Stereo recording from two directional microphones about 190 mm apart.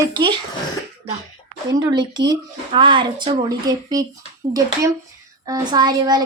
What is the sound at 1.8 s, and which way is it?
A child's voice, 20° right (ahead or behind).